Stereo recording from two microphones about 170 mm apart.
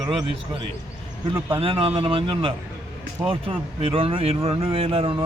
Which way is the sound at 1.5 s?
30° right (ahead or behind).